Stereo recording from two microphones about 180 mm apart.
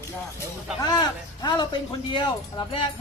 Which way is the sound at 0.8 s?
20° left (ahead or behind).